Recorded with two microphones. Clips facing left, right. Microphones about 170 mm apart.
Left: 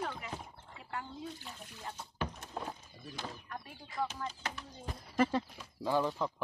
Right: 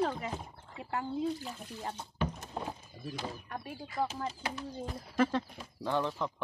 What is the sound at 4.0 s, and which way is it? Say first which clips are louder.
Speech: right 3 dB; 30° right (ahead or behind).